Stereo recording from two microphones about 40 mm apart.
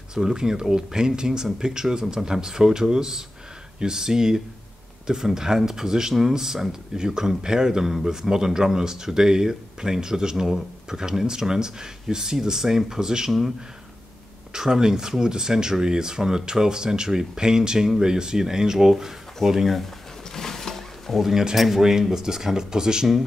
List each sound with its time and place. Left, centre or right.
0.1 s speech: centre
14.5 s speech: centre
20.3 s wild animals: centre
21.2 s speech: centre